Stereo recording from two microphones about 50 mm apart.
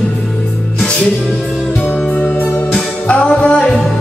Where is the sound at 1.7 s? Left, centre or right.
Left.